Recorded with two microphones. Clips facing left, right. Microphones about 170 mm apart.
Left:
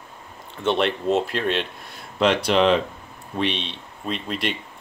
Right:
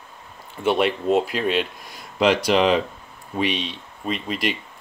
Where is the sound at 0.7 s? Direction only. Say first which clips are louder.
Right 1 dB; 5° right (ahead or behind).